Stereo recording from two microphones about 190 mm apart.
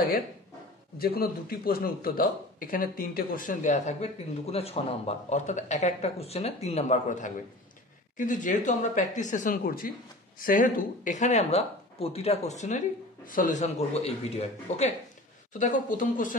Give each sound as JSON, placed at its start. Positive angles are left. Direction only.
{"t": 0.9, "sound": "a man's voice", "side_deg": 50}